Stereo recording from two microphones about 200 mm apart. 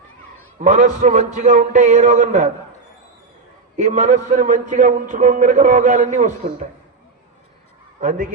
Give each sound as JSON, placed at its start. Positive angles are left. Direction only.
{"t": 0.6, "sound": "a man's voice", "side_deg": -40}
{"t": 3.8, "sound": "a man's voice", "side_deg": -35}